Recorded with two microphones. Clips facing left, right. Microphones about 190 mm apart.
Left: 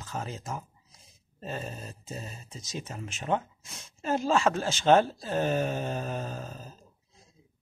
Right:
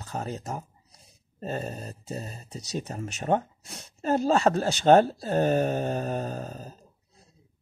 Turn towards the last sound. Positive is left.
turn(degrees=-40)  # may be behind; listen again after turning